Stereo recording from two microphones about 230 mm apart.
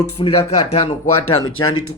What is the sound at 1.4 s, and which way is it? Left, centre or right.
Speech, left.